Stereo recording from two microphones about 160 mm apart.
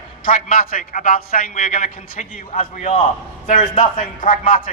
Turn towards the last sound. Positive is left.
turn(degrees=60)  # may be behind; listen again after turning